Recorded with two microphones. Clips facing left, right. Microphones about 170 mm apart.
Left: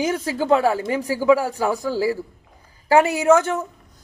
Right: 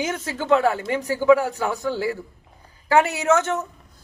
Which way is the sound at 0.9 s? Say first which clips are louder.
Right 2 dB; 10° left (ahead or behind).